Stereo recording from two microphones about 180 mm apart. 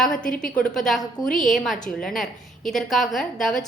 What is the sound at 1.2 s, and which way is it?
Speech, 50° left (ahead or behind).